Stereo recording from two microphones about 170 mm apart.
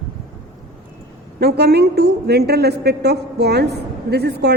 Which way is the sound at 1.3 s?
70° right (ahead or behind).